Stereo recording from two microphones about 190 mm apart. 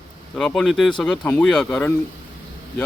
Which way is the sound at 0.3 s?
5° left (ahead or behind).